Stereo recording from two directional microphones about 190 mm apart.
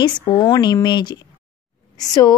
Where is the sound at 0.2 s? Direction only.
25° left (ahead or behind).